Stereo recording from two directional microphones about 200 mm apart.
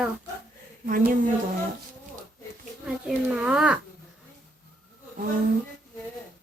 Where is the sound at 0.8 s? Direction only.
40° right (ahead or behind).